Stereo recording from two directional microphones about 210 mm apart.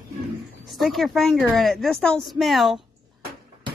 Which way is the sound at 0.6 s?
Centre (ahead or behind).